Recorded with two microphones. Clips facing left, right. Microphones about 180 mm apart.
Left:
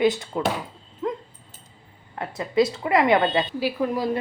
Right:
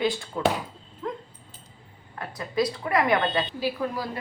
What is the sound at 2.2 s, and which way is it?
A woman's voice, 25° left (ahead or behind).